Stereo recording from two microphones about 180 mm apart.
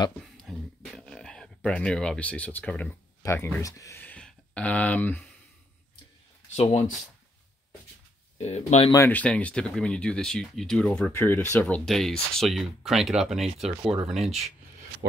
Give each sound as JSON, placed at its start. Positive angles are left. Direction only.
{"t": 0.4, "sound": "a sound", "side_deg": 5}
{"t": 6.5, "sound": "speech", "side_deg": 40}
{"t": 8.4, "sound": "speech", "side_deg": 40}
{"t": 8.9, "sound": "speech", "side_deg": 10}